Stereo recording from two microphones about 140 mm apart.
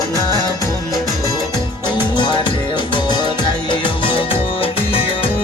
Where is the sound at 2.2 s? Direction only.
35° left (ahead or behind).